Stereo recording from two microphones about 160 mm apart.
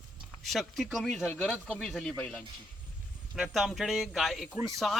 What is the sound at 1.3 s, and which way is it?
Speech, 10° left (ahead or behind).